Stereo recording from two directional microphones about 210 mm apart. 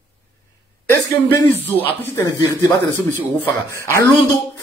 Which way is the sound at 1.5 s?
10° left (ahead or behind).